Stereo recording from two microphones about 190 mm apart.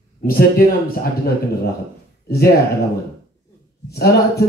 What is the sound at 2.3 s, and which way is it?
Speech, 55° left (ahead or behind).